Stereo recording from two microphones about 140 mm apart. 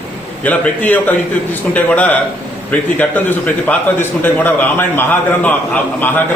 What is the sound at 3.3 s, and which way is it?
A man's voice, 10° left (ahead or behind).